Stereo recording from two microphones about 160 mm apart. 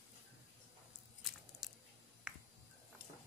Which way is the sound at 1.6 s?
Centre (ahead or behind).